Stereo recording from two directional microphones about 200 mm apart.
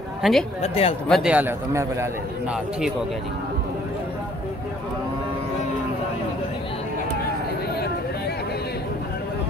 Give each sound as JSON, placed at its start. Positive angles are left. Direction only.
{"t": 0.2, "sound": "speech", "side_deg": 0}
{"t": 0.6, "sound": "speech", "side_deg": 30}
{"t": 1.0, "sound": "a man's voice", "side_deg": 0}